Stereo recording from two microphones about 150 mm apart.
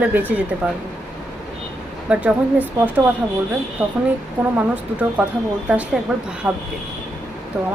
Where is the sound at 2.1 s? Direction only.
10° right (ahead or behind).